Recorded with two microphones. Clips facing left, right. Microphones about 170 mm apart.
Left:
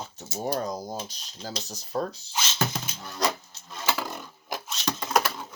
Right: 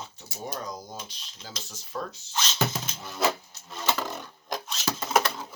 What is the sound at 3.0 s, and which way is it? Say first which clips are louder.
Wood: right 1 dB; 5° right (ahead or behind).